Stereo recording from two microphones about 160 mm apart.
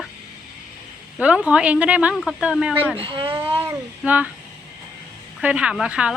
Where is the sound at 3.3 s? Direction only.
15° right (ahead or behind).